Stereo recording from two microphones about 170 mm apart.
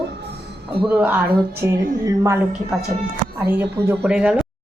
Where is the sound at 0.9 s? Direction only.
10° right (ahead or behind).